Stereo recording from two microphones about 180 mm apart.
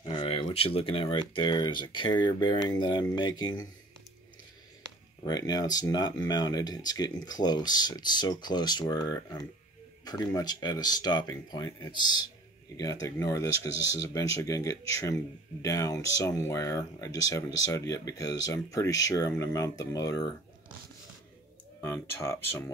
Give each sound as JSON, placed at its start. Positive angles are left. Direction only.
{"t": 0.0, "sound": "speech", "side_deg": 30}
{"t": 5.2, "sound": "speech", "side_deg": 20}
{"t": 21.8, "sound": "speech", "side_deg": 15}